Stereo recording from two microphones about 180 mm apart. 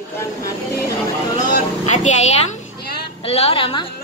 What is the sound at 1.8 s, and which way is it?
A woman's voice, 40° left (ahead or behind).